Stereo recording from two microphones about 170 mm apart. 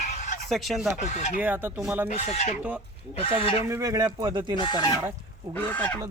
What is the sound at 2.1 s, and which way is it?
Speech, 40° left (ahead or behind).